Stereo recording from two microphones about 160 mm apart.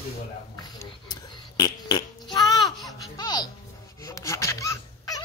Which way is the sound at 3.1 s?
25° left (ahead or behind).